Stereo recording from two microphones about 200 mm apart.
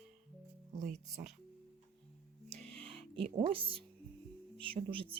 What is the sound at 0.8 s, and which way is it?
Speech, 40° right (ahead or behind).